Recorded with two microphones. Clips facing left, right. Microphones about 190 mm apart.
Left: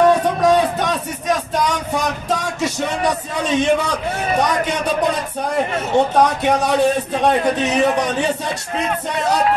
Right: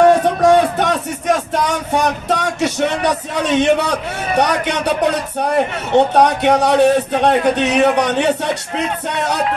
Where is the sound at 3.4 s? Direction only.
65° right (ahead or behind).